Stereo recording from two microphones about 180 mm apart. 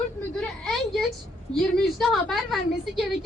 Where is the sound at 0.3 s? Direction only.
Centre (ahead or behind).